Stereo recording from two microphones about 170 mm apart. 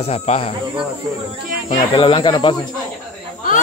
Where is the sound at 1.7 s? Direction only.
30° left (ahead or behind).